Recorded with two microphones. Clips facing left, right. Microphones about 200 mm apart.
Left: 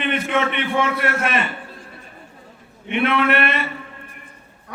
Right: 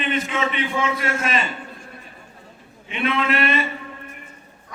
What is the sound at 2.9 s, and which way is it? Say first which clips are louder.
Speech: left 4 dB; 60° left (ahead or behind).